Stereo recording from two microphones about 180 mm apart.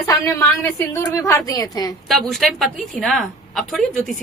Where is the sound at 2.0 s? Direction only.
Centre (ahead or behind).